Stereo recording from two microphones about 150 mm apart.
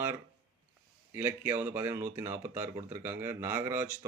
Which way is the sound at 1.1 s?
15° right (ahead or behind).